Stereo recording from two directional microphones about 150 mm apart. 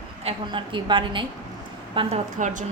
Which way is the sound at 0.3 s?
35° right (ahead or behind).